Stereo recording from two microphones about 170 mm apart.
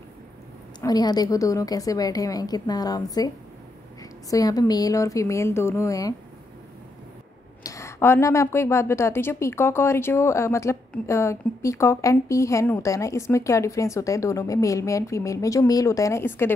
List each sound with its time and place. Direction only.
0.7 s a woman's voice: 25° left (ahead or behind)
4.3 s a woman's voice: 20° left (ahead or behind)
7.6 s speech: 15° left (ahead or behind)